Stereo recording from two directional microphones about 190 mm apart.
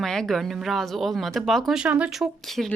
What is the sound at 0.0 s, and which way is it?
Speech, centre (ahead or behind).